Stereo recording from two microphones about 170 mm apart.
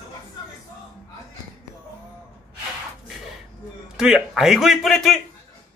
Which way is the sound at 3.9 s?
5° right (ahead or behind).